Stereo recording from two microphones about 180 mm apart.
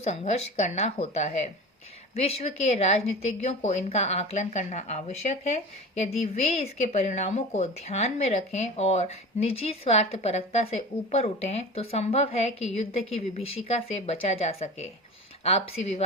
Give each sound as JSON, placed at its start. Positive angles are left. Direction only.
{"t": 0.0, "sound": "speech", "side_deg": 40}